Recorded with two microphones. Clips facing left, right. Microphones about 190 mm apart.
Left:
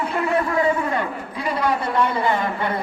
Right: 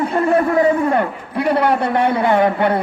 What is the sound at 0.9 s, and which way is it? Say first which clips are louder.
A man's voice: right 7 dB; 65° right (ahead or behind).